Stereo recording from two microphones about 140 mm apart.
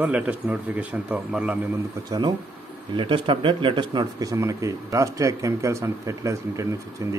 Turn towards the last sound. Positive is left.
turn(degrees=-20)  # may be behind; listen again after turning